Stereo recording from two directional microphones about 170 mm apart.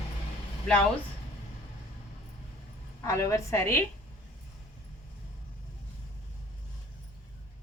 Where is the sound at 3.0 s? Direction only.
20° left (ahead or behind).